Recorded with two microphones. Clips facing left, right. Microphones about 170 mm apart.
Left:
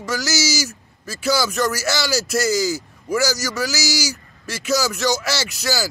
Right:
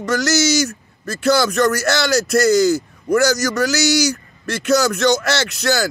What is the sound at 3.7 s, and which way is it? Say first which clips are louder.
Speech: right 7 dB; 65° right (ahead or behind).